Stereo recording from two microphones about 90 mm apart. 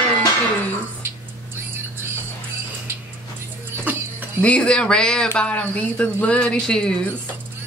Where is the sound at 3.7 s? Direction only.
25° right (ahead or behind).